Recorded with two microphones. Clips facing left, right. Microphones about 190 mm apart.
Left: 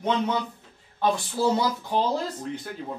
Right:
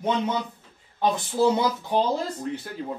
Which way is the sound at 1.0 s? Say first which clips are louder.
Right 2 dB; 20° right (ahead or behind).